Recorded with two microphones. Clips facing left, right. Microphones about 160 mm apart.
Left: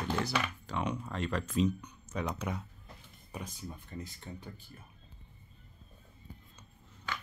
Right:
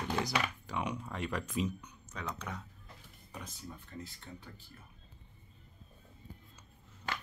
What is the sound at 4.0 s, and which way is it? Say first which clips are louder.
Speech: left 3 dB; 15° left (ahead or behind).